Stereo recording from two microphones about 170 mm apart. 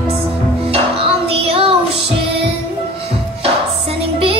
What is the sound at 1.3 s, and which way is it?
Child singing, 35° right (ahead or behind).